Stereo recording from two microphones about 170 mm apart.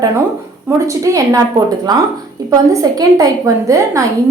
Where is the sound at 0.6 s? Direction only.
20° right (ahead or behind).